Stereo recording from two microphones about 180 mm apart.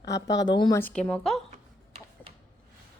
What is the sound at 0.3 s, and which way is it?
Speech, 20° left (ahead or behind).